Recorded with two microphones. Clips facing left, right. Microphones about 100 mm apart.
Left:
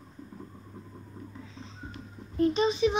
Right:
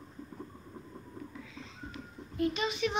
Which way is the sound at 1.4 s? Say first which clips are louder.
Left 2 dB; 30° left (ahead or behind).